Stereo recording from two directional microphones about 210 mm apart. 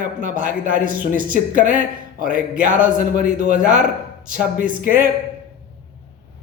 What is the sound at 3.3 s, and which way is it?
Speech, 35° right (ahead or behind).